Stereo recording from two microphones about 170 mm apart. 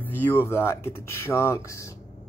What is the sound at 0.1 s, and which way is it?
Speech, 10° left (ahead or behind).